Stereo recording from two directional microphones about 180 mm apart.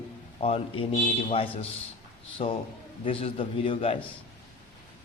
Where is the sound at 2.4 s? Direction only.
45° left (ahead or behind).